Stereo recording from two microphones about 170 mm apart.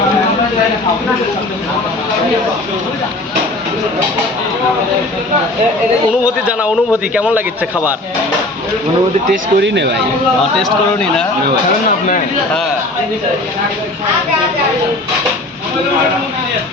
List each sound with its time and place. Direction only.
7.1 s a man's voice: 5° right (ahead or behind)
9.6 s speech: 90° right